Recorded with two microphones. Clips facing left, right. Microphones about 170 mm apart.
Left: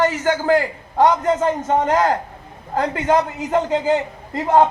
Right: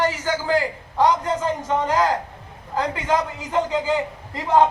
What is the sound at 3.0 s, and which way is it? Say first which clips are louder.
Speech: left 5 dB; 50° left (ahead or behind).